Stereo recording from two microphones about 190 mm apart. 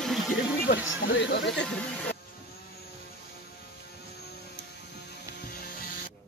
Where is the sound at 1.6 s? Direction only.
5° left (ahead or behind).